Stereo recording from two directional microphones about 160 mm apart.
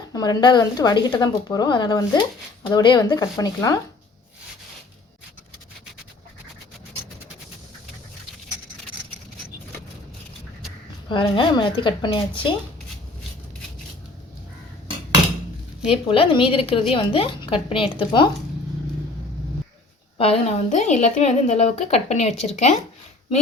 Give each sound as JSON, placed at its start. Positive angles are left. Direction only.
{"t": 0.1, "sound": "speech", "side_deg": 25}
{"t": 11.1, "sound": "a woman's voice", "side_deg": 30}
{"t": 15.9, "sound": "a woman's voice", "side_deg": 35}
{"t": 20.1, "sound": "a woman's voice", "side_deg": 35}